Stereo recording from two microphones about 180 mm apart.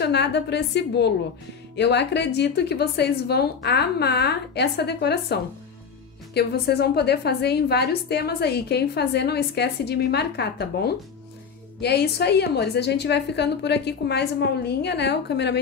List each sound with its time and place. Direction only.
0.0 s a woman's voice: 70° left (ahead or behind)